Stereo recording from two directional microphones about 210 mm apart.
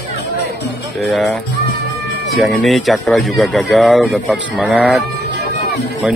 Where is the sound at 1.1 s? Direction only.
Centre (ahead or behind).